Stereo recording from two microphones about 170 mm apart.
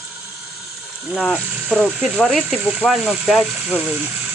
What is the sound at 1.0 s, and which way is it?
Speech, 5° right (ahead or behind).